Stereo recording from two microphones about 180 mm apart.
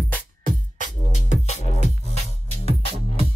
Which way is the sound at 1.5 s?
40° left (ahead or behind).